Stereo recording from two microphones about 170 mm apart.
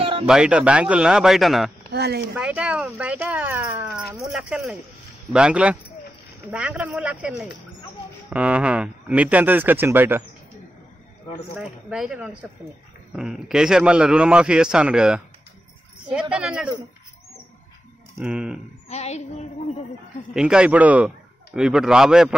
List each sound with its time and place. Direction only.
0.0 s a sound: 35° right (ahead or behind)
0.3 s a man's voice: 5° right (ahead or behind)
1.9 s speech: 70° right (ahead or behind)
2.3 s a man's voice: 10° right (ahead or behind)
11.5 s a man's voice: 5° right (ahead or behind)
18.2 s a man's voice: 5° right (ahead or behind)
18.9 s a sound: 40° left (ahead or behind)
20.3 s a man's voice: 5° right (ahead or behind)